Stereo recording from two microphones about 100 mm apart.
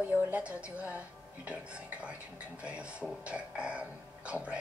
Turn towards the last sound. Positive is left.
turn(degrees=-10)  # may be behind; listen again after turning